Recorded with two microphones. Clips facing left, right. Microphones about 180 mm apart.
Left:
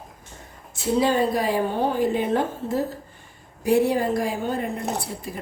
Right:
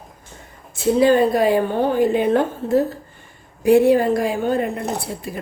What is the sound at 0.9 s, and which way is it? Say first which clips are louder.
A woman's voice: right 6 dB; 60° right (ahead or behind).